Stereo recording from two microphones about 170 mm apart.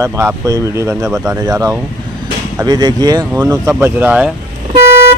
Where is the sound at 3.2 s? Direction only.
10° right (ahead or behind).